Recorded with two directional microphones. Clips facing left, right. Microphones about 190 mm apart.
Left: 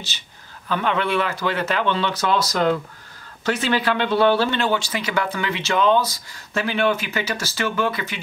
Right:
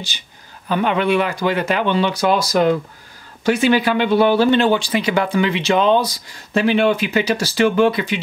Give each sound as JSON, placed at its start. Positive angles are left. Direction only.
{"t": 0.7, "sound": "speech", "side_deg": -15}